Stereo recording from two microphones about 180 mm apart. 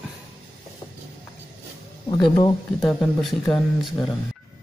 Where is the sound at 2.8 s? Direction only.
5° left (ahead or behind).